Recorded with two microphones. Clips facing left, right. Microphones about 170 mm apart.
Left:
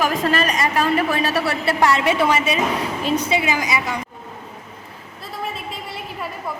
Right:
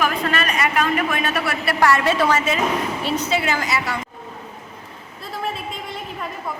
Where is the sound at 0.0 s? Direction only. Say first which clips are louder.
Left 2 dB; 40° left (ahead or behind).